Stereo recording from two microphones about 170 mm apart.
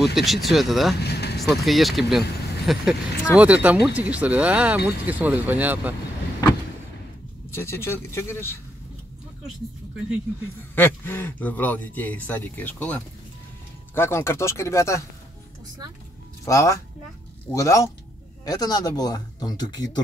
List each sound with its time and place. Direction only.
0.0 s speech: centre (ahead or behind)
0.9 s vehicle: 75° left (ahead or behind)
1.4 s speech: centre (ahead or behind)
7.5 s speech: 15° left (ahead or behind)
10.7 s speech: 10° left (ahead or behind)
16.4 s speech: 20° left (ahead or behind)